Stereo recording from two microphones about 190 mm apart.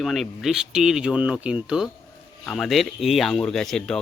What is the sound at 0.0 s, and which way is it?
Speech, centre (ahead or behind).